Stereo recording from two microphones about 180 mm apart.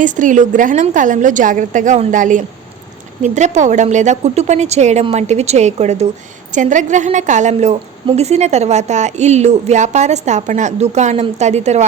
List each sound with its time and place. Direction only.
0.0 s a woman's voice: 45° right (ahead or behind)